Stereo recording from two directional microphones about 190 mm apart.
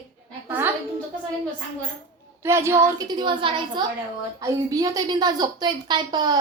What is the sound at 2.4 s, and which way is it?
A woman's voice, 15° right (ahead or behind).